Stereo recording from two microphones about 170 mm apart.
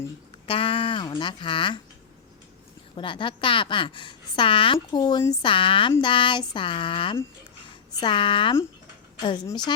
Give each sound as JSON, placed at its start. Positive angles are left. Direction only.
{"t": 0.4, "sound": "speech", "side_deg": 30}
{"t": 2.9, "sound": "a woman's voice", "side_deg": 30}